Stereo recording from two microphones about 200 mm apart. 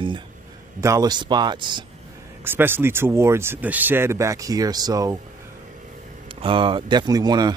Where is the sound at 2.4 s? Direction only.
10° right (ahead or behind).